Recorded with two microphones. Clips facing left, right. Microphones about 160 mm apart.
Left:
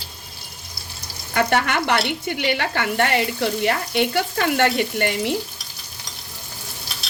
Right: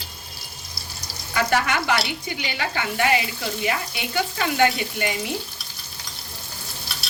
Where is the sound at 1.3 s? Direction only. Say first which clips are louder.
Left 2 dB; 60° left (ahead or behind).